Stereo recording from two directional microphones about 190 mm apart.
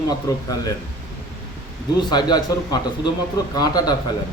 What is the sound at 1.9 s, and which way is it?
A man's voice, 20° left (ahead or behind).